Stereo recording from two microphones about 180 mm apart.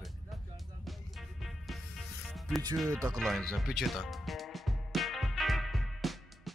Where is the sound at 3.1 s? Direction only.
Centre (ahead or behind).